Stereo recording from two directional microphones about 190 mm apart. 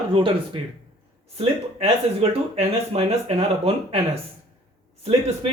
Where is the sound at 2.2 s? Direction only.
30° right (ahead or behind).